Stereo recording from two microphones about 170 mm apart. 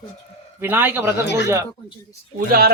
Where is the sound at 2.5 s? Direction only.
65° right (ahead or behind).